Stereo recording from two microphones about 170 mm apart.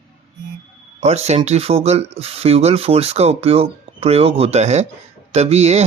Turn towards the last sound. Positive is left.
turn(degrees=-40)  # may be behind; listen again after turning